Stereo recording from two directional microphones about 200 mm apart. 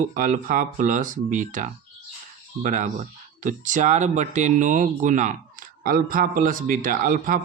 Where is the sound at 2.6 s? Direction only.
40° right (ahead or behind).